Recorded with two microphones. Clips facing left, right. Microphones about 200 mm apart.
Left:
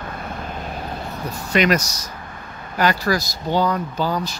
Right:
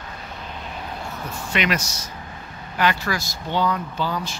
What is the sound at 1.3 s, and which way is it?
Speech, 40° left (ahead or behind).